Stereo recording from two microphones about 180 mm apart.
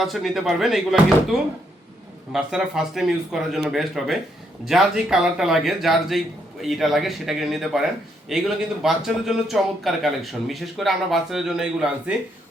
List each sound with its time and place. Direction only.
0.0 s speech: centre (ahead or behind)